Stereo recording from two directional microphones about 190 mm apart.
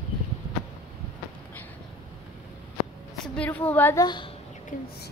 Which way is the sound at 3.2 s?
5° left (ahead or behind).